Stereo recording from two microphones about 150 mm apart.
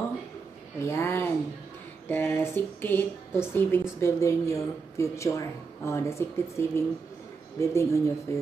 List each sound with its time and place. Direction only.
0.7 s speech: 20° left (ahead or behind)